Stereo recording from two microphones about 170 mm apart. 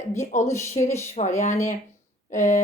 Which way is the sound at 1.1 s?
40° left (ahead or behind).